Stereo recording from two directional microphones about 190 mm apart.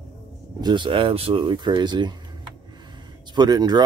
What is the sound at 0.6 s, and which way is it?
Speech, 25° right (ahead or behind).